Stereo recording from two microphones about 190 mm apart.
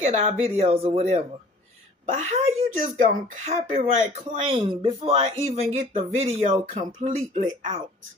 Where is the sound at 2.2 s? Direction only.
40° right (ahead or behind).